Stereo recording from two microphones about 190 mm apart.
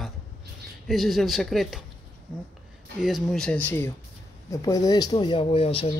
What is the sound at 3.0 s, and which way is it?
Speech, centre (ahead or behind).